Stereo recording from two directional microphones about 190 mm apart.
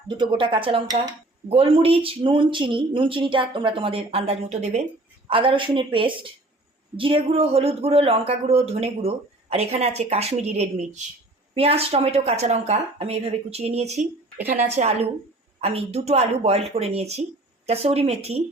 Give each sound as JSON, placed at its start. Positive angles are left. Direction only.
{"t": 0.2, "sound": "speech", "side_deg": -25}